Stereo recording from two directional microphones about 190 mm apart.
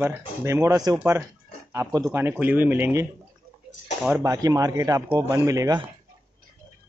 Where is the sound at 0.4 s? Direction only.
15° right (ahead or behind).